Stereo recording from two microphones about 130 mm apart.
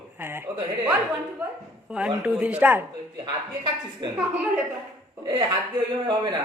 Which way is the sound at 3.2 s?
35° right (ahead or behind).